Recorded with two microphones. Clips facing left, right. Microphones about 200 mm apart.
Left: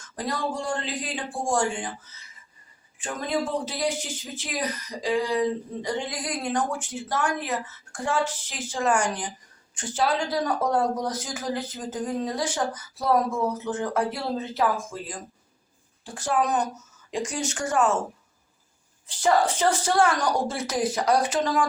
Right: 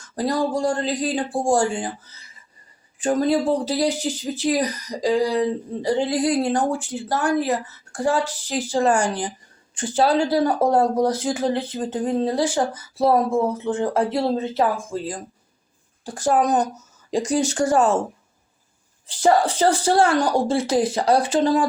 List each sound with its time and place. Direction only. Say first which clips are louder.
0.2 s speech: right 8 dB; 35° right (ahead or behind)
19.0 s speech: right 4 dB; 35° right (ahead or behind)